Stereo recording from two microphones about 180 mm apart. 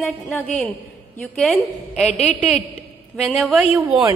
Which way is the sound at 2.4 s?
Centre (ahead or behind).